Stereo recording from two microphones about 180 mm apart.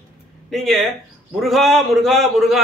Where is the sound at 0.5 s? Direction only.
Centre (ahead or behind).